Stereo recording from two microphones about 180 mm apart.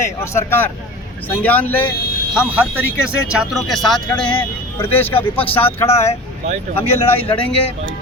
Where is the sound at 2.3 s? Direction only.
5° right (ahead or behind); by 5.1 s 10° left (ahead or behind).